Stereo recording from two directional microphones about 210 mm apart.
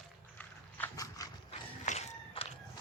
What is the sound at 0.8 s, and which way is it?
Dog, 15° left (ahead or behind).